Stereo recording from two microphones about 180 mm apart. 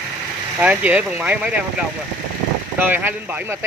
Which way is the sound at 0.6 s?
10° right (ahead or behind).